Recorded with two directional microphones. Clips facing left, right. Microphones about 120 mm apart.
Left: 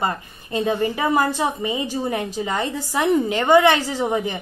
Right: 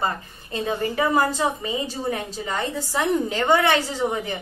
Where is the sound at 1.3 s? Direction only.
15° left (ahead or behind).